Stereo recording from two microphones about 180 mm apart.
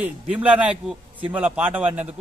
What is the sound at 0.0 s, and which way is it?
A man's voice, 5° right (ahead or behind).